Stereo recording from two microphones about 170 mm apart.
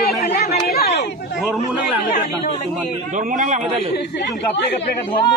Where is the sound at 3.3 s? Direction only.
45° right (ahead or behind).